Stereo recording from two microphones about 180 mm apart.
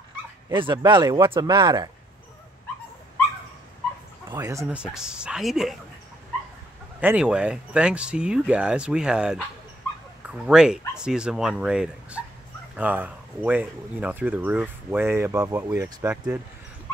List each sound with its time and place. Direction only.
0.5 s speech: 25° right (ahead or behind)
4.3 s speech: 20° right (ahead or behind)
4.7 s speech: 5° right (ahead or behind)
7.0 s speech: 10° right (ahead or behind)